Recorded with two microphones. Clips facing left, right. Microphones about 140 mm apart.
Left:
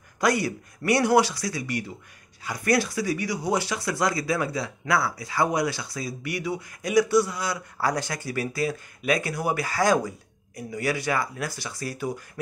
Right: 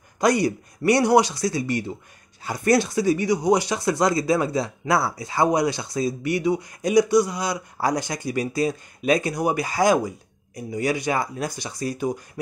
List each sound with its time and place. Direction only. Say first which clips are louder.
0.2 s speech: right 4 dB; 20° right (ahead or behind)